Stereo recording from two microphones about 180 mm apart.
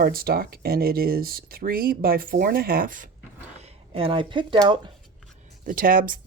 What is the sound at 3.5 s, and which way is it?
Speech, 35° right (ahead or behind).